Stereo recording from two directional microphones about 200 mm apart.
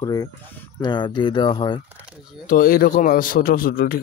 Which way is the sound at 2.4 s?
45° left (ahead or behind).